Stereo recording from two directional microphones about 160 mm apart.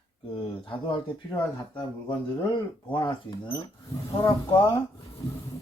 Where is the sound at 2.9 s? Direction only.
30° left (ahead or behind).